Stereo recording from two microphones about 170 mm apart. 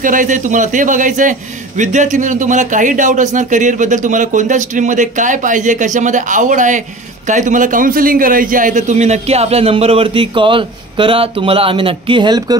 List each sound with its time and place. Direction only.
0.0 s a man's voice: 50° right (ahead or behind); by 12.5 s 25° right (ahead or behind)